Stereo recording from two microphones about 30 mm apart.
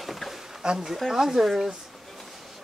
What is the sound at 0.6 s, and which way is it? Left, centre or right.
Speech, right.